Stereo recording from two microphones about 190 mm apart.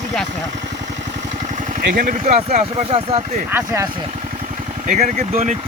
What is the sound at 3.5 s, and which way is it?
Speech, 10° right (ahead or behind).